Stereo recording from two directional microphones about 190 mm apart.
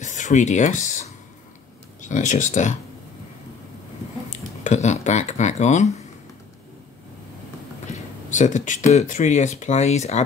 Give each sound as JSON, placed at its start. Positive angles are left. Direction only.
{"t": 0.0, "sound": "speech", "side_deg": 40}
{"t": 4.3, "sound": "speech", "side_deg": 40}
{"t": 8.3, "sound": "speech", "side_deg": 40}